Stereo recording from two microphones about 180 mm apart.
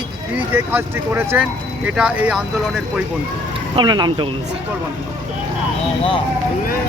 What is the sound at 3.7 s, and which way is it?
Speech, 25° right (ahead or behind).